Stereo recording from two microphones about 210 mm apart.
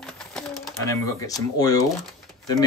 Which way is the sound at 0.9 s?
15° left (ahead or behind).